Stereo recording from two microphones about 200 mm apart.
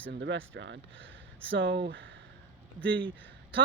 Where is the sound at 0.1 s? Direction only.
65° right (ahead or behind).